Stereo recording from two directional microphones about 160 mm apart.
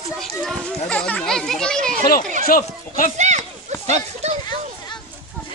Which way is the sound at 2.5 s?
60° left (ahead or behind).